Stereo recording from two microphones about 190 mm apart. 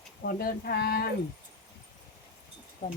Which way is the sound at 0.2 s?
55° left (ahead or behind).